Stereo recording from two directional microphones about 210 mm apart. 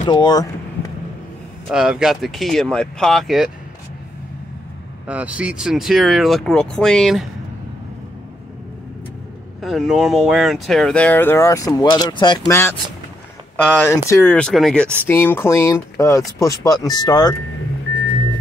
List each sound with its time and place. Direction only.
0.0 s vehicle: 20° left (ahead or behind)
1.7 s speech: 5° right (ahead or behind)
5.0 s speech: 5° right (ahead or behind)
9.6 s speech: centre (ahead or behind)
13.7 s speech: 15° left (ahead or behind)